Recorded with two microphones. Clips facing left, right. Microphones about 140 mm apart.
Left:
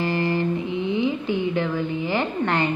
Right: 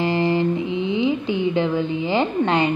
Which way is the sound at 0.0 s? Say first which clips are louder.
Right 3 dB; 20° right (ahead or behind).